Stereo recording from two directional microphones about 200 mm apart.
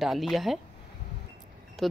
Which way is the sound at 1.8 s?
Centre (ahead or behind).